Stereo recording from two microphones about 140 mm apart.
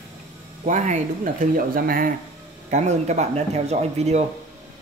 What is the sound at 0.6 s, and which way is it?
Speech, 60° right (ahead or behind).